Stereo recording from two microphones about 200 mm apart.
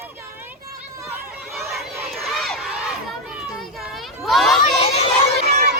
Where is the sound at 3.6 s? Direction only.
Centre (ahead or behind).